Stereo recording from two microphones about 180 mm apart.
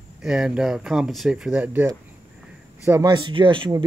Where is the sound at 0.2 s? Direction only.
5° right (ahead or behind).